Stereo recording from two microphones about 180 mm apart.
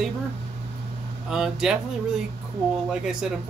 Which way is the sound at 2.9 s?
5° right (ahead or behind).